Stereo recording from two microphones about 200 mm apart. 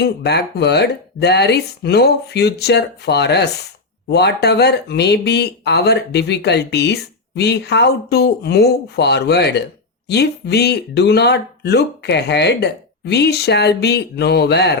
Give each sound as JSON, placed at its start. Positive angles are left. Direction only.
{"t": 0.0, "sound": "speech", "side_deg": 55}